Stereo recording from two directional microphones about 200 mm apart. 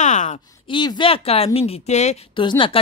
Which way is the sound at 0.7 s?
25° left (ahead or behind).